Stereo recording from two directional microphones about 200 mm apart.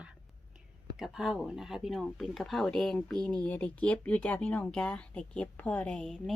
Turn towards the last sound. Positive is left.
turn(degrees=0)  # may be behind; listen again after turning